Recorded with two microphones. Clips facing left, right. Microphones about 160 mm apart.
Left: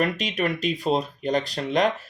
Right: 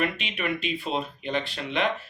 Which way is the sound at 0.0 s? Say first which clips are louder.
Left 4 dB; 40° left (ahead or behind).